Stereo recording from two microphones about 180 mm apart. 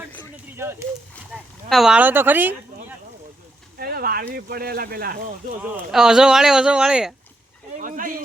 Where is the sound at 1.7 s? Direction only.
5° right (ahead or behind).